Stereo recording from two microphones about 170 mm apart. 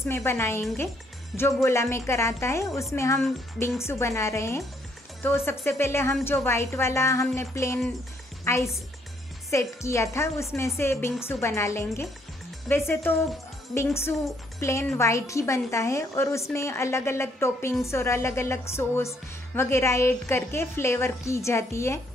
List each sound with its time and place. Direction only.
0.0 s speech: 15° left (ahead or behind)
14.6 s speech: 15° left (ahead or behind)